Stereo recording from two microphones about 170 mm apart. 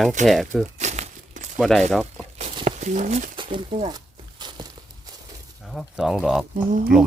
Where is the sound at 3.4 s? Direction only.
30° right (ahead or behind).